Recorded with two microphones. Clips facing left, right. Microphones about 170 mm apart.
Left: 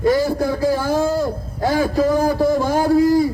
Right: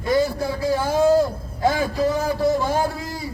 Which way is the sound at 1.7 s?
45° left (ahead or behind).